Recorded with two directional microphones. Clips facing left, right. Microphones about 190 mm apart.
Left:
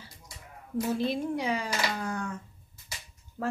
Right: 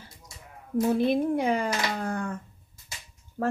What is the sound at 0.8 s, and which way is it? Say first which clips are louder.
A child's voice: right 6 dB; 55° right (ahead or behind).